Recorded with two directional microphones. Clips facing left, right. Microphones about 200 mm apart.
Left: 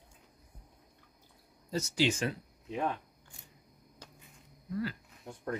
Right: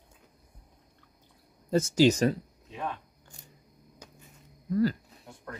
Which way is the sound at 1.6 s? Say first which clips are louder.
Right 9 dB; 50° right (ahead or behind).